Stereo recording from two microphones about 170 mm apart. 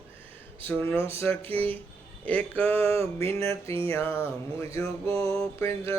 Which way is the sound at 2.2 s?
10° left (ahead or behind).